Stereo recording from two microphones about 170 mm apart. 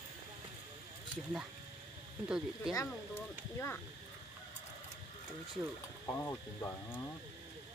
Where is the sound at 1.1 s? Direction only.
5° right (ahead or behind).